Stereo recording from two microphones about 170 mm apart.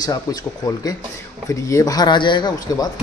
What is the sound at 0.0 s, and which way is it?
Speech, 20° left (ahead or behind).